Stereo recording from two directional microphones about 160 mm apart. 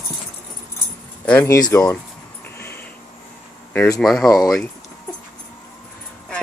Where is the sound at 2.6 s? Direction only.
15° left (ahead or behind).